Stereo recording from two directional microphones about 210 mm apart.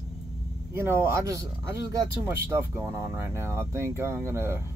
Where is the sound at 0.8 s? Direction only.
15° right (ahead or behind).